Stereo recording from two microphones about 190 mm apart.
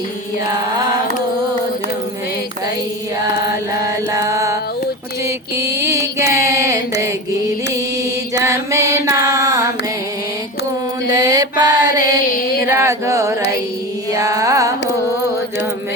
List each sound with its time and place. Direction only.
3.8 s mantra: 15° right (ahead or behind)
5.2 s music: 15° right (ahead or behind)
8.4 s mantra: 15° right (ahead or behind)
11.1 s mantra: 20° right (ahead or behind)
12.6 s carnatic music: 15° right (ahead or behind)